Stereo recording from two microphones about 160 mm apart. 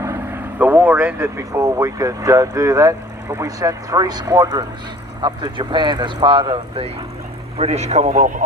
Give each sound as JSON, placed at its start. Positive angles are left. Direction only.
{"t": 0.0, "sound": "speech", "side_deg": -15}
{"t": 7.6, "sound": "a man's voice", "side_deg": -40}